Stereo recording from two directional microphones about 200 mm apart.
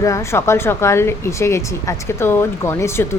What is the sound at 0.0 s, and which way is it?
A woman's voice, 15° left (ahead or behind).